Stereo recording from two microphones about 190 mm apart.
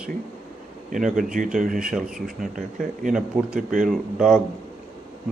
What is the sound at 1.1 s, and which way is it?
Speech, 45° right (ahead or behind).